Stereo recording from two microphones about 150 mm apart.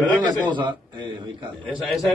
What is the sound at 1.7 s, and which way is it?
Speech, centre (ahead or behind).